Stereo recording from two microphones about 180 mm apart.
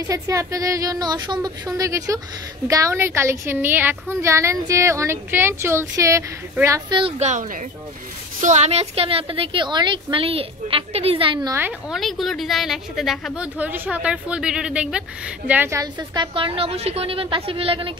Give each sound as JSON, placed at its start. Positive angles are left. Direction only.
{"t": 0.1, "sound": "a woman's voice", "side_deg": -15}
{"t": 6.9, "sound": "a woman's voice", "side_deg": -30}
{"t": 11.9, "sound": "a woman's voice", "side_deg": 0}